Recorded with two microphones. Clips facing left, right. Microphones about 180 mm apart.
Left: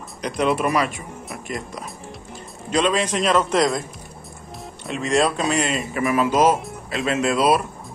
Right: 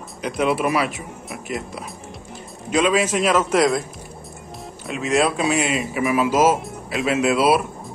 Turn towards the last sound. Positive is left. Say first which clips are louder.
# right 1 dB
turn(degrees=-5)  # may be behind; listen again after turning